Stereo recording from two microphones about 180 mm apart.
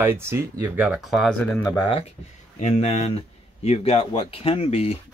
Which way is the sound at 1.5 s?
10° left (ahead or behind).